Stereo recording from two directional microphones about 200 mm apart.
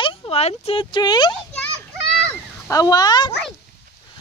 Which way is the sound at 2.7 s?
20° left (ahead or behind).